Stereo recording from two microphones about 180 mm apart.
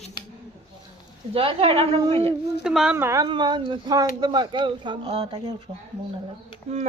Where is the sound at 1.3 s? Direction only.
30° right (ahead or behind).